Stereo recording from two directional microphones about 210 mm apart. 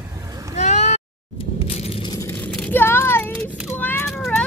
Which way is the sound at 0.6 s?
35° left (ahead or behind).